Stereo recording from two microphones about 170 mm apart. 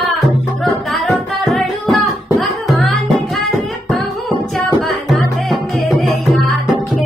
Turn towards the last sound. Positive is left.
turn(degrees=0)  # may be behind; listen again after turning